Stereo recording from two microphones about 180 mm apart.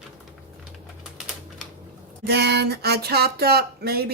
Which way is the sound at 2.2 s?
65° right (ahead or behind).